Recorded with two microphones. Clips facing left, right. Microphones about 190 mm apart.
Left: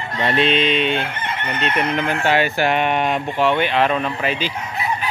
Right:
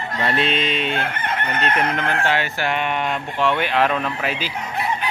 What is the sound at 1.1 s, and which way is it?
Chicken, 55° right (ahead or behind).